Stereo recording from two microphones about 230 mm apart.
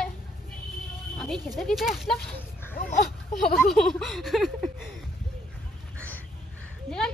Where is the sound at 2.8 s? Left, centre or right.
Left.